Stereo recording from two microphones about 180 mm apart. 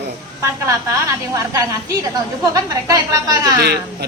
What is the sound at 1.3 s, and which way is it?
A woman's voice, 15° right (ahead or behind).